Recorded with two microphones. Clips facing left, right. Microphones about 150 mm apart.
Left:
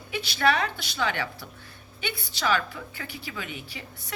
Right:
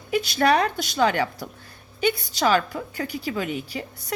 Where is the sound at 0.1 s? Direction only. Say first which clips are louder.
Right 5 dB; 45° right (ahead or behind).